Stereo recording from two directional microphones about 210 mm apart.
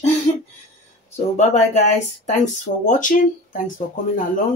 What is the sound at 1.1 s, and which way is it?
Speech, 35° left (ahead or behind).